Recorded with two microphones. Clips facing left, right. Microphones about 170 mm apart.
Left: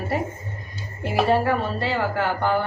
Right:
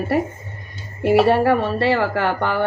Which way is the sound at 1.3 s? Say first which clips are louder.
Right 4 dB; 70° right (ahead or behind).